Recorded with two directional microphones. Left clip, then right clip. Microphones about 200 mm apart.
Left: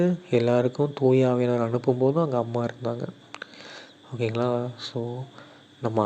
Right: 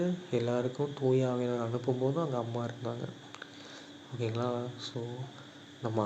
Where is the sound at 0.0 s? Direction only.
35° left (ahead or behind).